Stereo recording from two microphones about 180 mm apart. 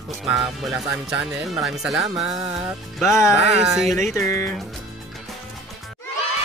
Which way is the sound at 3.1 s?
15° left (ahead or behind).